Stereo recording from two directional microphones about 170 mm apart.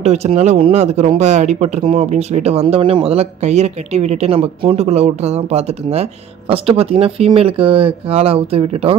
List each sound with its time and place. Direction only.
0.0 s speech: 40° right (ahead or behind)